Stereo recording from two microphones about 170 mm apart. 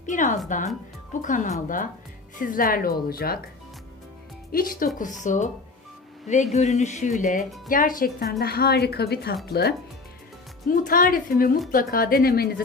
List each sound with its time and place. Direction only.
0.0 s a woman's voice: 45° left (ahead or behind)
4.5 s a woman's voice: 55° left (ahead or behind)
10.7 s a woman's voice: 55° left (ahead or behind)